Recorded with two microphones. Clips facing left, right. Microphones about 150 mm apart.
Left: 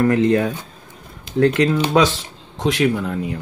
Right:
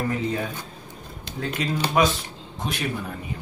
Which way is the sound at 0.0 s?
85° left.